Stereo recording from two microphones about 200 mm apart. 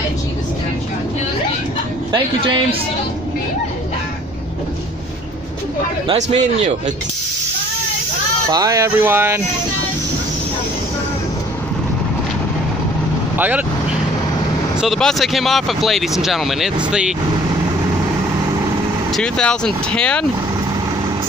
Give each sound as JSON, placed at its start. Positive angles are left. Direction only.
{"t": 2.1, "sound": "a man's voice", "side_deg": -25}
{"t": 8.5, "sound": "speech", "side_deg": -20}
{"t": 13.4, "sound": "speech", "side_deg": -10}
{"t": 14.8, "sound": "speech", "side_deg": 0}
{"t": 19.1, "sound": "speech", "side_deg": 5}